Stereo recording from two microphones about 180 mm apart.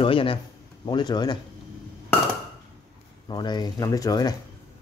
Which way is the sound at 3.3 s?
25° left (ahead or behind).